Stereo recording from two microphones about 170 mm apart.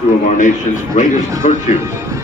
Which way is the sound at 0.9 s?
45° left (ahead or behind).